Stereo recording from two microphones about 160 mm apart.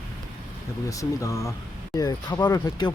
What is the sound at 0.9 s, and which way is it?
Speech, 20° left (ahead or behind).